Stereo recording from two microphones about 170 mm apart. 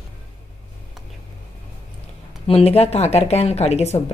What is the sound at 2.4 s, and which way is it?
Speech, 35° left (ahead or behind).